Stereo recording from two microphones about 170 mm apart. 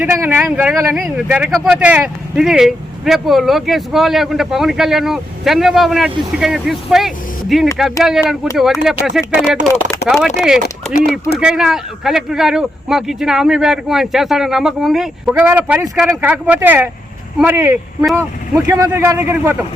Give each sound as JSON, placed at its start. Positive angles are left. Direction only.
{"t": 0.0, "sound": "speech", "side_deg": -15}